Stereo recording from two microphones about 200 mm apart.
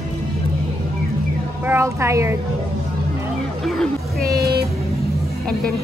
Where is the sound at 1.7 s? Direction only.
15° right (ahead or behind).